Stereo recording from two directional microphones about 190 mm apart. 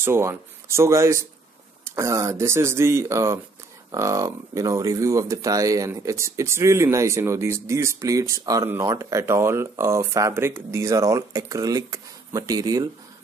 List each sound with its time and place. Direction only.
0.0 s speech: 15° right (ahead or behind)